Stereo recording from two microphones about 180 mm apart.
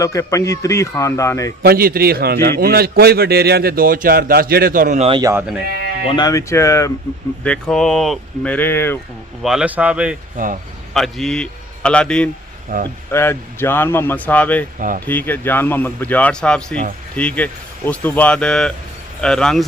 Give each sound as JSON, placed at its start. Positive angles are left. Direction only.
{"t": 0.0, "sound": "a man's voice", "side_deg": 15}
{"t": 1.6, "sound": "a man's voice", "side_deg": -55}
{"t": 5.0, "sound": "speech", "side_deg": -25}
{"t": 5.3, "sound": "speech", "side_deg": -10}
{"t": 6.1, "sound": "a man's voice", "side_deg": 25}
{"t": 7.4, "sound": "speech", "side_deg": 5}
{"t": 8.5, "sound": "a man's voice", "side_deg": 10}
{"t": 9.4, "sound": "speech", "side_deg": -5}
{"t": 10.3, "sound": "speech", "side_deg": -50}
{"t": 10.9, "sound": "a man's voice", "side_deg": 0}
{"t": 12.7, "sound": "speech", "side_deg": -55}
{"t": 13.1, "sound": "a man's voice", "side_deg": 15}
{"t": 14.8, "sound": "speech", "side_deg": -50}
{"t": 15.0, "sound": "a man's voice", "side_deg": 10}